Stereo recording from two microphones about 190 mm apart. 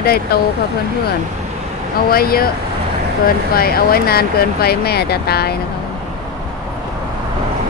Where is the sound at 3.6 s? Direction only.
50° left (ahead or behind).